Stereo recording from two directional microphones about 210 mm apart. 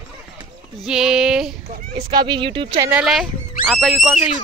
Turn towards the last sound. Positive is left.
turn(degrees=0)  # may be behind; listen again after turning